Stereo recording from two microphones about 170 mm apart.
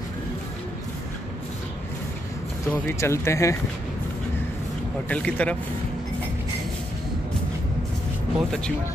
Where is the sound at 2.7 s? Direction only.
15° left (ahead or behind).